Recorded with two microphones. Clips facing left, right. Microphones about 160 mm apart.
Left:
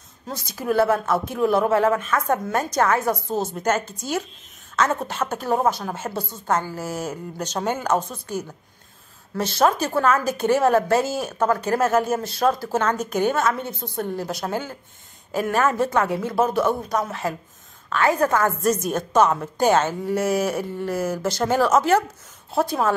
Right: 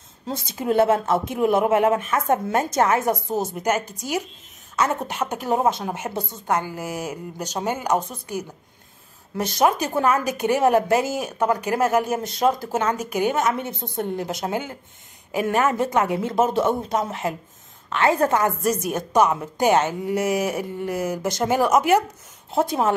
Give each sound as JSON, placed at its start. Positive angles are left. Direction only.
{"t": 0.3, "sound": "a woman's voice", "side_deg": -25}